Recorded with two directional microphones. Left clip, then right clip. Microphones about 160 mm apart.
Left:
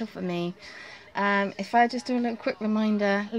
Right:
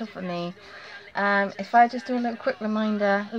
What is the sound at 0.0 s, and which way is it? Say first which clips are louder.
Speech: even; 30° left (ahead or behind).